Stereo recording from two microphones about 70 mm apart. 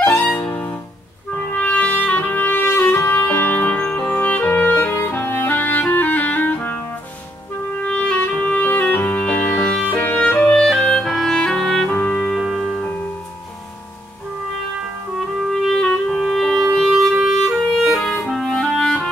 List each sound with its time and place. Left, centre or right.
0.0 s music: left
4.0 s clarinet: left
7.8 s clarinet: centre
12.4 s music: centre
15.1 s clarinet: centre